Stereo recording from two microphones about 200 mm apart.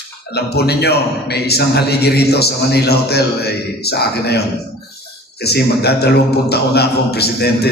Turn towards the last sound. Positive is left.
turn(degrees=55)  # may be behind; listen again after turning